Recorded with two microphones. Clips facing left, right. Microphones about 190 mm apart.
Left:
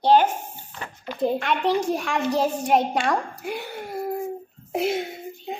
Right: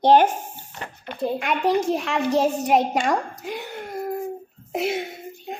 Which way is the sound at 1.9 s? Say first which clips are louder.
Right 1 dB; 5° right (ahead or behind).